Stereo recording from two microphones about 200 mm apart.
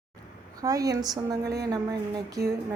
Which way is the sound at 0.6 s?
15° right (ahead or behind).